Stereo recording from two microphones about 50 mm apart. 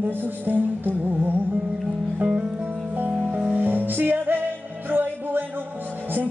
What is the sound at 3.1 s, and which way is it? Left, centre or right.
Music, right.